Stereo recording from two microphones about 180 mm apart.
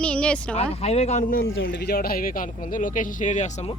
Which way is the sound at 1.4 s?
90° left.